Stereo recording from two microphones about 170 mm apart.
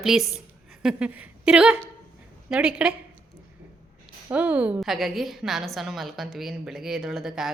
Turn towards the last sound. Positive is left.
turn(degrees=0)  # may be behind; listen again after turning